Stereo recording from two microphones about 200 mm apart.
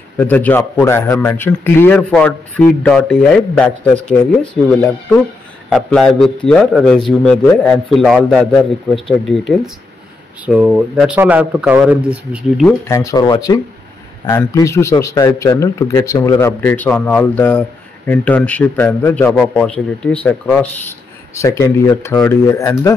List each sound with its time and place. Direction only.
0.2 s speech: 10° left (ahead or behind)
5.7 s a man's voice: 5° left (ahead or behind)
12.8 s speech: 15° left (ahead or behind)